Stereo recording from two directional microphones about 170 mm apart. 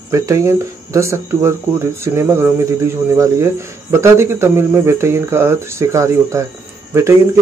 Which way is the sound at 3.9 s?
15° right (ahead or behind).